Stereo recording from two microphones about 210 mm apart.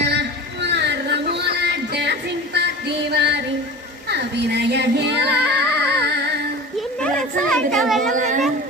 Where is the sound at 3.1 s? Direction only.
50° right (ahead or behind).